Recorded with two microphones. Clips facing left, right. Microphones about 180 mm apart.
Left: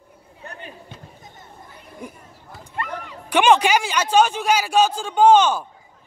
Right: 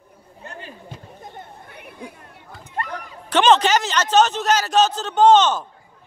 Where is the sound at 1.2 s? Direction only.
65° right (ahead or behind).